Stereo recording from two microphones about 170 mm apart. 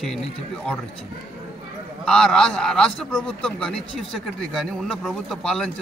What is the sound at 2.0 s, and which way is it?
A man's voice, 5° left (ahead or behind).